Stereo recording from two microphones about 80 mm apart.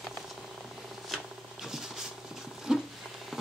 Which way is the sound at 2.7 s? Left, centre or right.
Centre.